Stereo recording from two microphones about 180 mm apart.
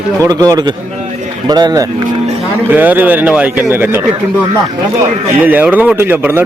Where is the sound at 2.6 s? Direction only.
10° right (ahead or behind).